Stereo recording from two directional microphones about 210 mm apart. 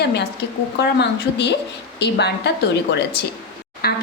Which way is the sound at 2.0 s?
55° left (ahead or behind).